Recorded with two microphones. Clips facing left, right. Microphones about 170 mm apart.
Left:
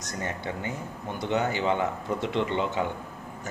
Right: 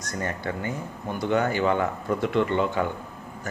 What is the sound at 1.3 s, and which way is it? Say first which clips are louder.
A man's voice: right 3 dB; 20° left (ahead or behind).